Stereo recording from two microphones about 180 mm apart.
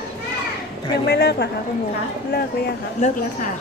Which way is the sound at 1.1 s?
65° left (ahead or behind).